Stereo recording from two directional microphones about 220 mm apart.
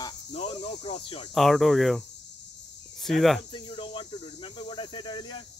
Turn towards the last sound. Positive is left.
turn(degrees=20)  # may be behind; listen again after turning